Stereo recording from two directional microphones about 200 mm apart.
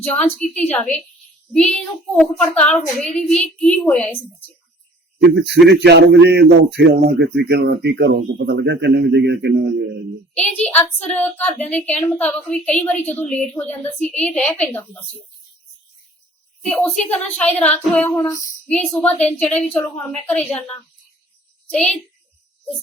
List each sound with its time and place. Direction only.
0.1 s a woman's voice: 5° left (ahead or behind)
5.2 s a man's voice: 55° right (ahead or behind)
10.3 s a woman's voice: 5° left (ahead or behind)
16.6 s a child's voice: 5° left (ahead or behind)